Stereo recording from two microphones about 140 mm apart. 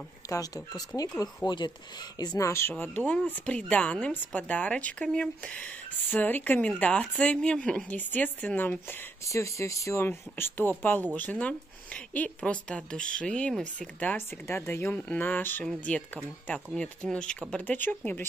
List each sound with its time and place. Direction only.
0.2 s speech: 25° left (ahead or behind)